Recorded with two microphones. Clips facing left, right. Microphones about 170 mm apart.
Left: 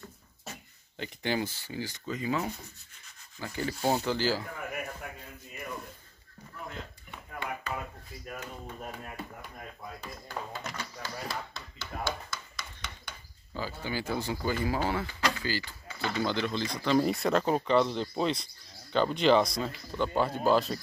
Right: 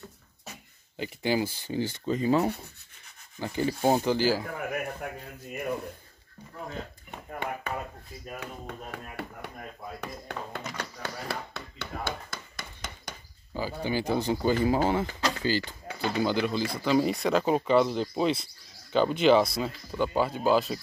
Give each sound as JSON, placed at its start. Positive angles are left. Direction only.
{"t": 0.9, "sound": "speech", "side_deg": -10}
{"t": 1.7, "sound": "speech", "side_deg": -30}
{"t": 3.3, "sound": "speech", "side_deg": -25}
{"t": 7.1, "sound": "speech", "side_deg": -55}
{"t": 8.4, "sound": "speech", "side_deg": -70}
{"t": 12.0, "sound": "a sound", "side_deg": -50}
{"t": 13.5, "sound": "speech", "side_deg": -15}
{"t": 16.0, "sound": "speech", "side_deg": -10}